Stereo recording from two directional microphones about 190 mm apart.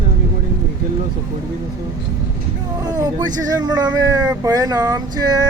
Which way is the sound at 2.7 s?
20° right (ahead or behind).